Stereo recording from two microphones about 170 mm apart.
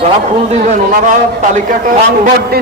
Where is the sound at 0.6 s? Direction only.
45° right (ahead or behind).